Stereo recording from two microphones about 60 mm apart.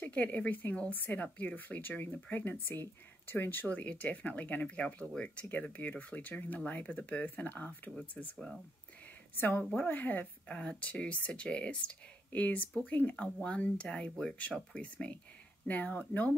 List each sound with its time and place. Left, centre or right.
0.1 s speech: left
9.4 s a woman's voice: left